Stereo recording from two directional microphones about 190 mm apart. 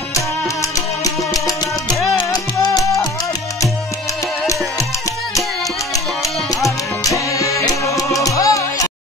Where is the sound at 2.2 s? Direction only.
20° left (ahead or behind).